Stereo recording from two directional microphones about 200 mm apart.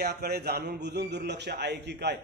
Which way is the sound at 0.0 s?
55° right (ahead or behind).